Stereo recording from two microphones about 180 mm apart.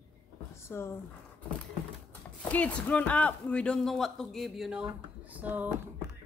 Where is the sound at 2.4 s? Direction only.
10° left (ahead or behind); by 5.7 s 10° right (ahead or behind).